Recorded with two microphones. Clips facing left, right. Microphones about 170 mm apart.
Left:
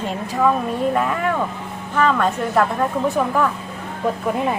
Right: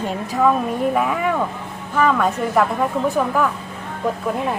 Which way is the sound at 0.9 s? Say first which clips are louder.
Right 1 dB; 5° right (ahead or behind).